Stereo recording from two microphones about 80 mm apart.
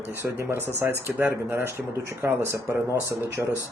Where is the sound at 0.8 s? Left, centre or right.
Right.